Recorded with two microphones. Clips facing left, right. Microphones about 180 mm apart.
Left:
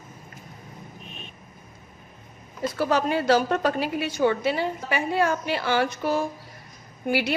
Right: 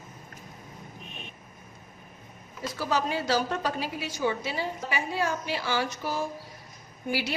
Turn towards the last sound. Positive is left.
turn(degrees=60)  # may be behind; listen again after turning